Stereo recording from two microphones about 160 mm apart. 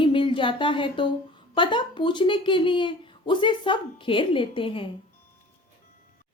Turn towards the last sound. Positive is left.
turn(degrees=35)  # may be behind; listen again after turning